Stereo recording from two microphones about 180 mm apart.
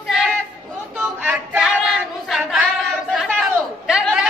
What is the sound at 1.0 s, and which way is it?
Child singing, 10° right (ahead or behind).